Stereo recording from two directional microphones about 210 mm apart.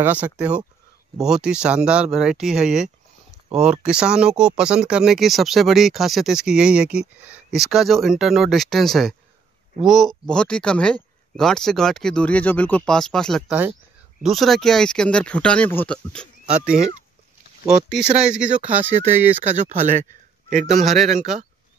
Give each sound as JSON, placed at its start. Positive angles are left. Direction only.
{"t": 0.0, "sound": "speech", "side_deg": -5}
{"t": 17.9, "sound": "speech", "side_deg": -5}
{"t": 19.5, "sound": "speech", "side_deg": -35}
{"t": 20.8, "sound": "speech", "side_deg": 0}
{"t": 21.1, "sound": "speech", "side_deg": -35}